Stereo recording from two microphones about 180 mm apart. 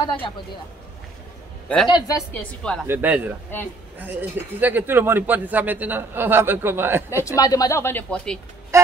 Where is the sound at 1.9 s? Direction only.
20° left (ahead or behind).